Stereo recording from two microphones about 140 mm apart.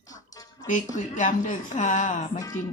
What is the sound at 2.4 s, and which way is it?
Music, 20° left (ahead or behind).